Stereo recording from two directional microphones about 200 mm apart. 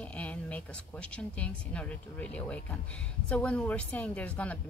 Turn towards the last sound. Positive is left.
turn(degrees=5)  # may be behind; listen again after turning